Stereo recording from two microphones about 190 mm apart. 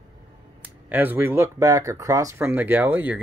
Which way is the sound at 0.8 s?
10° right (ahead or behind).